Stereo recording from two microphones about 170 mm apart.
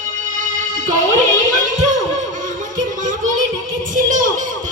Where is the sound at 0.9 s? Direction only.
45° right (ahead or behind).